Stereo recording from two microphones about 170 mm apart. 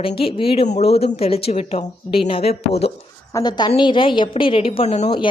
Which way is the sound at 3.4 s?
25° left (ahead or behind).